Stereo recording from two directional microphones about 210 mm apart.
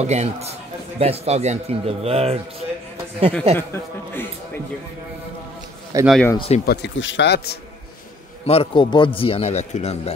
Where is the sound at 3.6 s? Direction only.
10° left (ahead or behind).